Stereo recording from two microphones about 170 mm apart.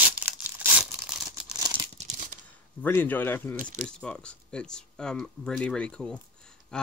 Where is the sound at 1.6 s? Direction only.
25° right (ahead or behind).